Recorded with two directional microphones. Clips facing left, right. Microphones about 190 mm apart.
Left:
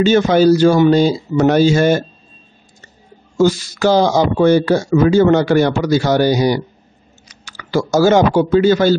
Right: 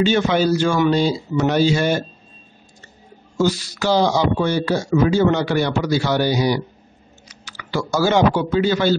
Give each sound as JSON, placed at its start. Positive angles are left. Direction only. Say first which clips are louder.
{"t": 0.0, "sound": "speech", "louder": "left 6 dB", "side_deg": 40}
{"t": 3.3, "sound": "speech", "louder": "left 5 dB", "side_deg": 45}